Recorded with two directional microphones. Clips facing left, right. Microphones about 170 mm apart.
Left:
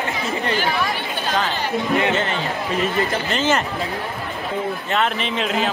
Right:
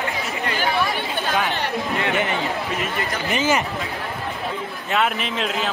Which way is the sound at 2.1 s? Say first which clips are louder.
Even; 15° right (ahead or behind).